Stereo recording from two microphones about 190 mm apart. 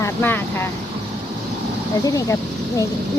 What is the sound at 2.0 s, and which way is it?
Speech, 20° left (ahead or behind).